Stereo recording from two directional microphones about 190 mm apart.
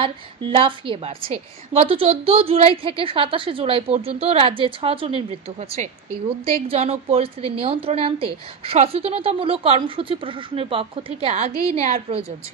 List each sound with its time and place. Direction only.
0.0 s a woman's voice: 30° right (ahead or behind)